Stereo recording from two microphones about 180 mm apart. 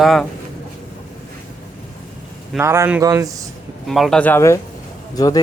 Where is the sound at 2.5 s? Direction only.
10° right (ahead or behind).